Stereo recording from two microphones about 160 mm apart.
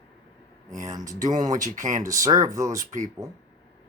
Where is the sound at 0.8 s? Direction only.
20° right (ahead or behind).